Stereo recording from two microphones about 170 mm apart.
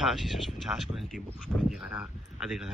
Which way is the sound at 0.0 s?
Centre (ahead or behind).